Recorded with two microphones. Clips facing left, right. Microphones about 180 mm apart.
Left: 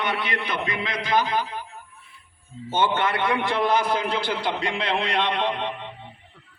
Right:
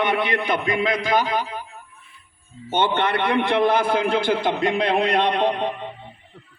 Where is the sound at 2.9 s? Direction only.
60° right (ahead or behind); by 5.7 s 40° right (ahead or behind).